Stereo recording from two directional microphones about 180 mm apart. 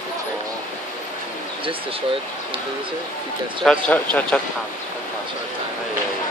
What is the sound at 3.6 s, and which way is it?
Speech, 5° left (ahead or behind).